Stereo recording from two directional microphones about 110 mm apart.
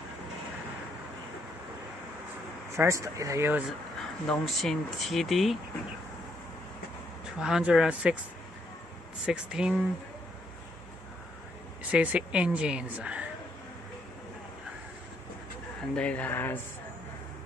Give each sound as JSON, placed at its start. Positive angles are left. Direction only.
{"t": 2.7, "sound": "speech", "side_deg": -25}
{"t": 4.3, "sound": "speech", "side_deg": 5}
{"t": 7.2, "sound": "a woman's voice", "side_deg": -5}
{"t": 9.2, "sound": "a woman's voice", "side_deg": -5}
{"t": 11.9, "sound": "a woman's voice", "side_deg": -10}
{"t": 15.9, "sound": "speech", "side_deg": 10}